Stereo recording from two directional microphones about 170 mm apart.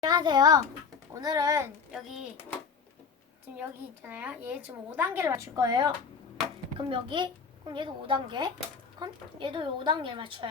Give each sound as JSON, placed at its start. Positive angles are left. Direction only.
{"t": 0.0, "sound": "a woman's voice", "side_deg": -25}
{"t": 3.6, "sound": "a woman's voice", "side_deg": -10}